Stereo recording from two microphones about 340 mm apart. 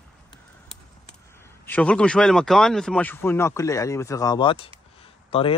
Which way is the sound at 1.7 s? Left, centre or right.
Centre.